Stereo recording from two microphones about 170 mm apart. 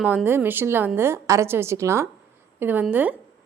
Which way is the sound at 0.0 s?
5° right (ahead or behind).